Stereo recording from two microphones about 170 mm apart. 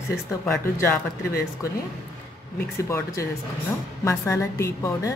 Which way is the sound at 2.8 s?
20° left (ahead or behind).